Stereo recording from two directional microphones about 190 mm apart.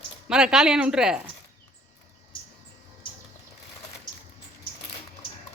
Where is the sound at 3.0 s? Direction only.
25° left (ahead or behind).